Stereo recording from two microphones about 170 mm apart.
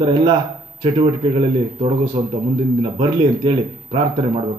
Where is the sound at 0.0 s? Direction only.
30° right (ahead or behind).